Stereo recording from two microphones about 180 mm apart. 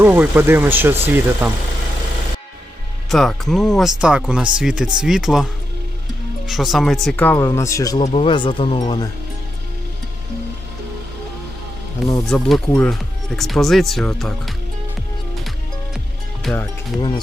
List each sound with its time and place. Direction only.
0.0 s speech: 10° right (ahead or behind)
3.1 s speech: centre (ahead or behind); by 8.0 s 20° left (ahead or behind)
8.0 s speech: 30° left (ahead or behind)
11.9 s speech: centre (ahead or behind)
16.4 s speech: 5° left (ahead or behind)